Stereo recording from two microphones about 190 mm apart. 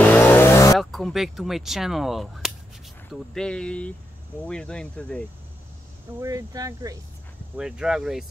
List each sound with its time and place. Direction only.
0.0 s vehicle: 10° left (ahead or behind)
0.7 s speech: centre (ahead or behind)
6.2 s speech: 20° right (ahead or behind)
7.5 s speech: 5° right (ahead or behind)